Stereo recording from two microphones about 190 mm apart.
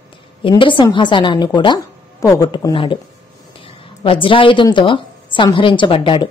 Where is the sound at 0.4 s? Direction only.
25° left (ahead or behind).